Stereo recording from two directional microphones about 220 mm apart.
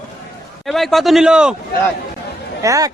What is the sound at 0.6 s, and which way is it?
Speech, centre (ahead or behind).